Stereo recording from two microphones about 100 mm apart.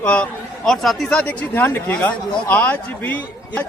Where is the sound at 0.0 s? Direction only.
15° left (ahead or behind).